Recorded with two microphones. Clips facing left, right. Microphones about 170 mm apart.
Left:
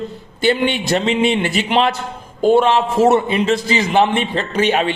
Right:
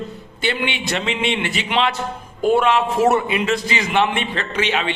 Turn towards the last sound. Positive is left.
turn(degrees=45)  # may be behind; listen again after turning